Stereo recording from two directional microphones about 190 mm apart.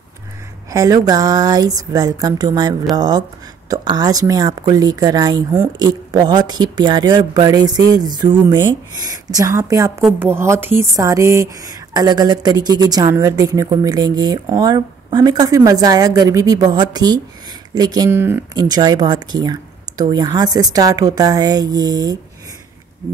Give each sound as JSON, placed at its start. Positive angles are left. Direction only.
{"t": 0.7, "sound": "a woman's voice", "side_deg": -15}